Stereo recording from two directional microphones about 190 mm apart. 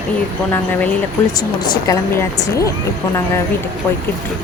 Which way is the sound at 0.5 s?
10° left (ahead or behind).